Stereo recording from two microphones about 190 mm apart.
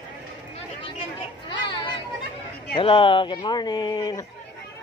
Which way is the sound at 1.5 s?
25° left (ahead or behind).